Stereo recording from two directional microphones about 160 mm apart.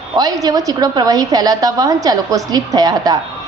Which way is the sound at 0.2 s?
25° right (ahead or behind).